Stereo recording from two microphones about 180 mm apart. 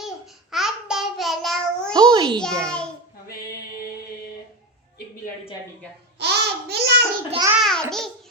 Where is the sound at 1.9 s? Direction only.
25° right (ahead or behind).